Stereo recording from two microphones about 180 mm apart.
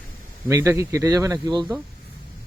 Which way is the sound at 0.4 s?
15° right (ahead or behind).